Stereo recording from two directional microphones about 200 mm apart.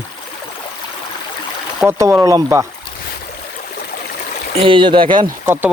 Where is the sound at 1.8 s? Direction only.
15° right (ahead or behind).